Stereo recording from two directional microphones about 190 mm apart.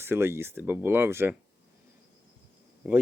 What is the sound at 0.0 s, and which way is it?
Speech, 15° right (ahead or behind).